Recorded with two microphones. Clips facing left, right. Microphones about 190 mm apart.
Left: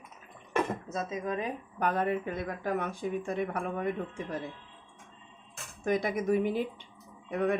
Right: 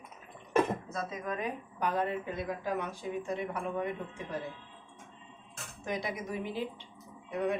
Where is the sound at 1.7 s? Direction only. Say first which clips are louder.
Left 3 dB; 55° left (ahead or behind).